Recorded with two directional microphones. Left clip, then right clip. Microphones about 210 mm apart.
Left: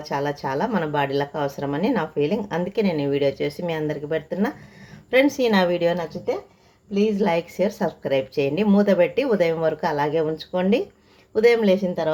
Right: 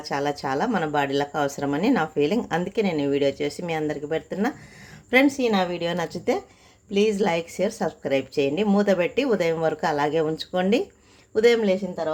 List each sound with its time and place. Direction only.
0.0 s speech: 10° right (ahead or behind)
5.4 s speech: 5° left (ahead or behind)
6.9 s a woman's voice: 25° right (ahead or behind)
7.2 s speech: 10° right (ahead or behind); by 12.1 s 10° left (ahead or behind)